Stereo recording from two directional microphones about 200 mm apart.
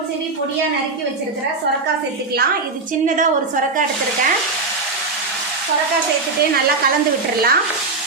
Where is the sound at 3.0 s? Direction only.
40° right (ahead or behind).